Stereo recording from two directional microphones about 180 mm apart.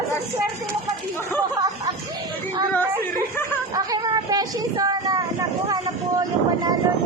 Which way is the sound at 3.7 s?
20° right (ahead or behind).